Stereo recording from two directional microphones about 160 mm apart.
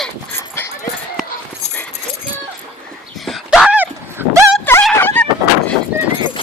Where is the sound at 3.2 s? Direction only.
Centre (ahead or behind); by 4.5 s 15° right (ahead or behind).